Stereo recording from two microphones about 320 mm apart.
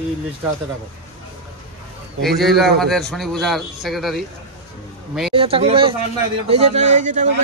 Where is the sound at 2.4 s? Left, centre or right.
Centre.